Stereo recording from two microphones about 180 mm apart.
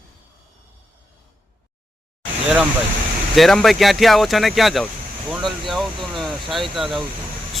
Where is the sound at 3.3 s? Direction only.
Centre (ahead or behind).